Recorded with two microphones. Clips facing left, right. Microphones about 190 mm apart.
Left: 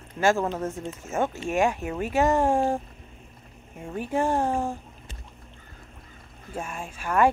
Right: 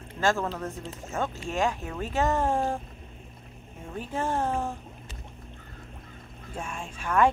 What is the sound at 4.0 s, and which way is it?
Speech, 15° left (ahead or behind).